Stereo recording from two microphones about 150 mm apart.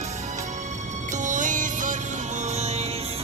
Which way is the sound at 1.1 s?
55° right (ahead or behind).